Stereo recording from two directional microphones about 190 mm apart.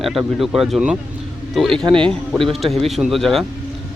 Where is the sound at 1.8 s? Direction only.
25° right (ahead or behind).